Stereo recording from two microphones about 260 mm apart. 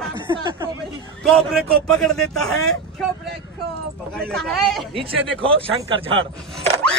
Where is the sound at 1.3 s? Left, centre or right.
Centre.